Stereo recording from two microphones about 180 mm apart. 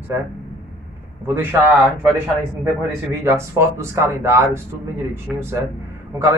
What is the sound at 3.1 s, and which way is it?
Speech, 15° right (ahead or behind).